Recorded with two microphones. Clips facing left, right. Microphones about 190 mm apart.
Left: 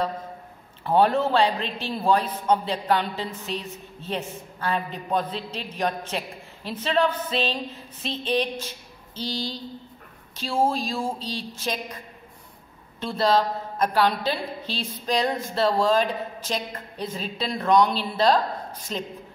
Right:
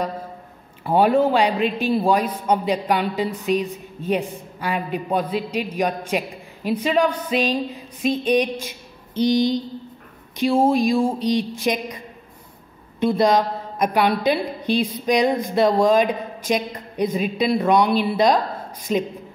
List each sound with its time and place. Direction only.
0.8 s a man's voice: 10° right (ahead or behind)
13.0 s a man's voice: 15° right (ahead or behind)